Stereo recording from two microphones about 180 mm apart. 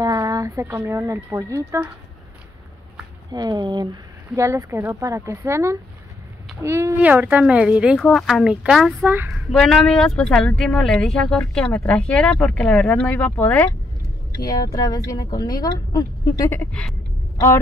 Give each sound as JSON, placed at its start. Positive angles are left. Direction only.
{"t": 0.0, "sound": "speech", "side_deg": -20}
{"t": 3.3, "sound": "speech", "side_deg": -20}
{"t": 9.5, "sound": "speech", "side_deg": 0}
{"t": 14.4, "sound": "speech", "side_deg": 20}
{"t": 16.4, "sound": "speech", "side_deg": 5}